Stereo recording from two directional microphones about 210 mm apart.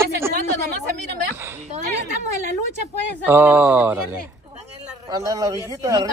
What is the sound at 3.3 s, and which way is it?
Speech, 10° right (ahead or behind).